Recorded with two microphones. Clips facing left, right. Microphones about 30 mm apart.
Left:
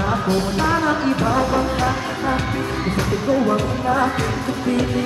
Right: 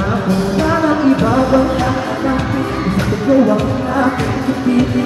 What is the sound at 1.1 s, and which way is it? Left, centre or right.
Music, right.